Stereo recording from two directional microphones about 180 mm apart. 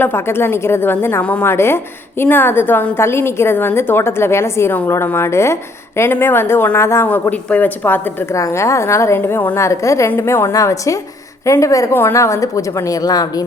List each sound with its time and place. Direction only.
0.0 s a woman's voice: 10° left (ahead or behind)